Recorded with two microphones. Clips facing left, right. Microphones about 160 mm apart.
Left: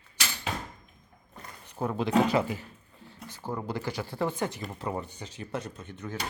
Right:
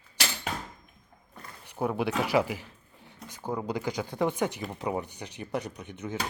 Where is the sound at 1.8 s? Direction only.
10° right (ahead or behind).